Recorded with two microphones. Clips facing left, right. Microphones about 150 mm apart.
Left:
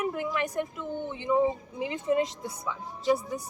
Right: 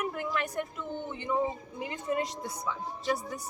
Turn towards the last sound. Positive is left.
turn(degrees=15)  # may be behind; listen again after turning